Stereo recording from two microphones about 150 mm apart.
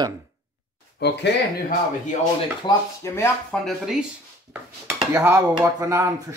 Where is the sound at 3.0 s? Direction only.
20° left (ahead or behind).